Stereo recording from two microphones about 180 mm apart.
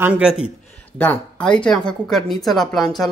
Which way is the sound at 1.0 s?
10° left (ahead or behind).